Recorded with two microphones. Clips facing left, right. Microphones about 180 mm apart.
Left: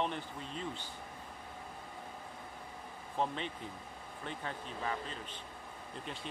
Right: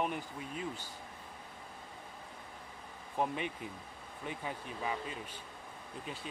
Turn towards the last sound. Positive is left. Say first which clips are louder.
# right 1 dB
turn(degrees=-10)  # may be behind; listen again after turning